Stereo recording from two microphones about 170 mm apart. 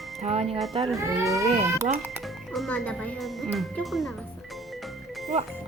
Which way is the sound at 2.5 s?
5° left (ahead or behind).